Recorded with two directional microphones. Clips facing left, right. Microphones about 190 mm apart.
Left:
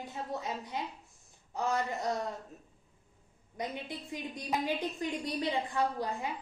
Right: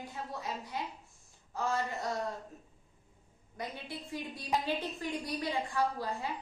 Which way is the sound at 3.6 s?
20° left (ahead or behind).